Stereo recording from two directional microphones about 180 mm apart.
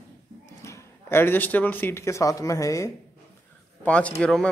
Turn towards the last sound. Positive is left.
turn(degrees=5)  # may be behind; listen again after turning